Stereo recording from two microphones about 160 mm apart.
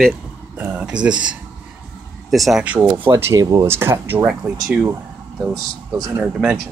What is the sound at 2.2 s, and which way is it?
Speech, centre (ahead or behind).